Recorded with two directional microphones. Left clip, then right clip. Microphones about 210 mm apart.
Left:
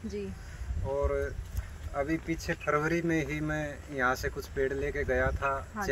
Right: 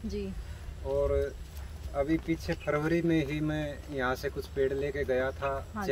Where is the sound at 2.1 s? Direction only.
15° right (ahead or behind).